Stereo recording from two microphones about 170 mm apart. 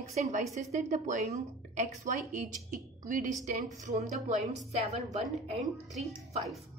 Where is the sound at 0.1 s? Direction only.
40° right (ahead or behind).